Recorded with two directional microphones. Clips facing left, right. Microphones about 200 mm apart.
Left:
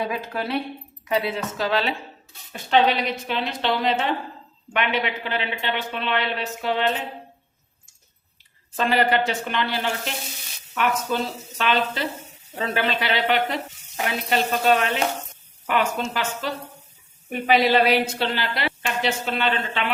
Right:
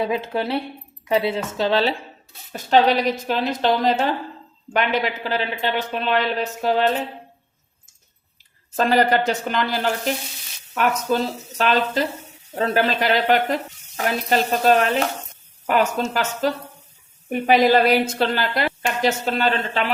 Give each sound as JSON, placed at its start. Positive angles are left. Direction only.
{"t": 0.1, "sound": "speech", "side_deg": -30}
{"t": 8.7, "sound": "a woman's voice", "side_deg": -40}